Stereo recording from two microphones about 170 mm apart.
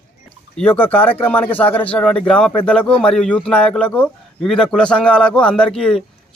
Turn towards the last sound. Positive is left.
turn(degrees=5)  # may be behind; listen again after turning